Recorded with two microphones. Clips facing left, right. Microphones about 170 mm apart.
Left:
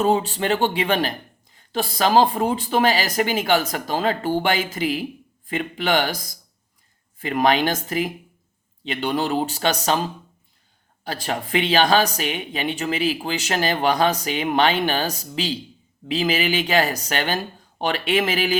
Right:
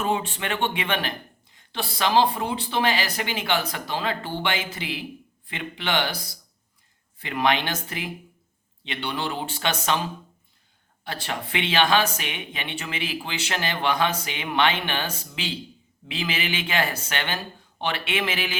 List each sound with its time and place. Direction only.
0.0 s speech: 35° left (ahead or behind)
11.0 s speech: 40° left (ahead or behind)